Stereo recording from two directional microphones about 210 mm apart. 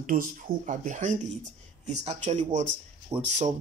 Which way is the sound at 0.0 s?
40° right (ahead or behind).